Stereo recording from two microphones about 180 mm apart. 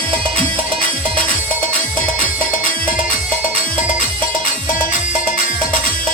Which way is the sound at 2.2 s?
45° left (ahead or behind).